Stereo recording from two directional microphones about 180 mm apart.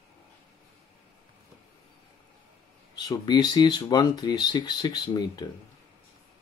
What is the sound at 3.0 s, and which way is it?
Speech, 25° left (ahead or behind).